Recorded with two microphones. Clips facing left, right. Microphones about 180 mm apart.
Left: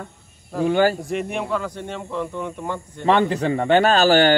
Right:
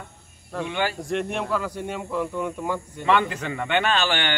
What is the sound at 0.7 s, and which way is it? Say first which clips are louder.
Speech: left 10 dB; 40° left (ahead or behind).